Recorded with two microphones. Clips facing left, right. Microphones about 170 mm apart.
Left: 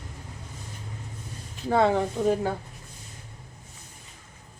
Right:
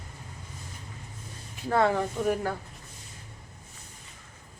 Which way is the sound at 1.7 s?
20° left (ahead or behind).